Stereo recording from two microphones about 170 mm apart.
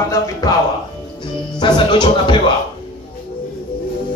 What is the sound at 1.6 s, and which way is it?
Speech, 30° left (ahead or behind).